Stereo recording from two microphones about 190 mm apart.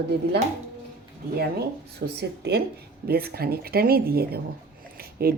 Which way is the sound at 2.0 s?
60° right (ahead or behind).